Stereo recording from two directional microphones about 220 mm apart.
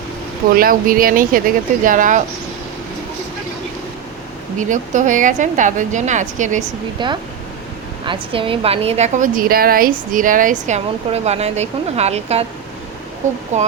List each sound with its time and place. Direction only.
0.5 s a woman's voice: 40° right (ahead or behind)
4.7 s a woman's voice: 35° right (ahead or behind)
7.0 s a woman's voice: 20° right (ahead or behind)
13.5 s a woman's voice: 30° right (ahead or behind)